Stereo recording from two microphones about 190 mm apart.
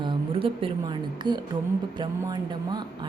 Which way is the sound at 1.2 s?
25° right (ahead or behind).